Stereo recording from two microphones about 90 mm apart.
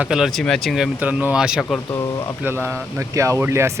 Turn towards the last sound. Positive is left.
turn(degrees=-30)  # may be behind; listen again after turning